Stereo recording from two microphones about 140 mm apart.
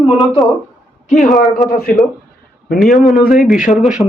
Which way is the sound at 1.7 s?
90° left.